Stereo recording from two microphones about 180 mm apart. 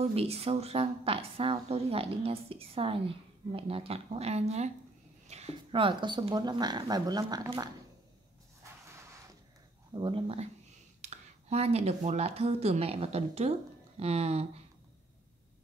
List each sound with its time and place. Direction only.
0.0 s a woman's voice: 35° right (ahead or behind)
8.6 s a sound: 15° right (ahead or behind)
9.9 s a woman's voice: 30° right (ahead or behind)